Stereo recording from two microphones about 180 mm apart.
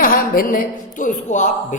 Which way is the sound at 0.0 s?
50° left (ahead or behind).